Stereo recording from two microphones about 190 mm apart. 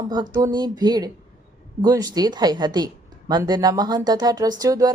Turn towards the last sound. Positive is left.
turn(degrees=-20)  # may be behind; listen again after turning